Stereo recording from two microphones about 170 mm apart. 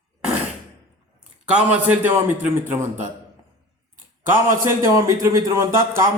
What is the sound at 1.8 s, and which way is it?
A man's voice, 10° right (ahead or behind).